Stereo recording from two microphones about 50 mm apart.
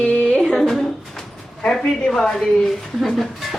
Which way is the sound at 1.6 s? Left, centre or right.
Centre.